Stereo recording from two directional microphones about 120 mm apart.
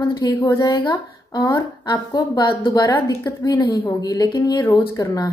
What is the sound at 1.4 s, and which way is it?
A woman's voice, 30° left (ahead or behind).